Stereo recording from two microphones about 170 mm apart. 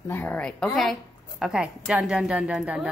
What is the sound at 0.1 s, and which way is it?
A woman's voice, 10° left (ahead or behind).